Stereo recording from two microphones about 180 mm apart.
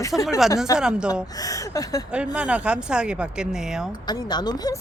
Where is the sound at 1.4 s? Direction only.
20° left (ahead or behind).